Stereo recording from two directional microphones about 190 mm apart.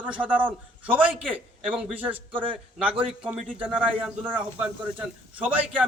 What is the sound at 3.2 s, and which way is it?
A man's voice, 5° right (ahead or behind).